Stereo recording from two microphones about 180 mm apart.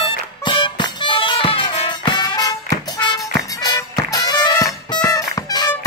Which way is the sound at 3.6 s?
20° left (ahead or behind).